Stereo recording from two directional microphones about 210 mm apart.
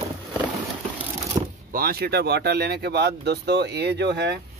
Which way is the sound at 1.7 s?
45° right (ahead or behind).